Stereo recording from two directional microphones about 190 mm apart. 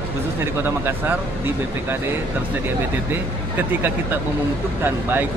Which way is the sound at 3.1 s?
10° right (ahead or behind).